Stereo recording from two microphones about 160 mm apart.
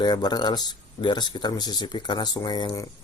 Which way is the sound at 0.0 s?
25° left (ahead or behind).